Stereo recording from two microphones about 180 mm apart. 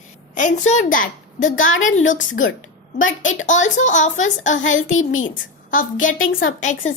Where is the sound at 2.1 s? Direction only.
90° left.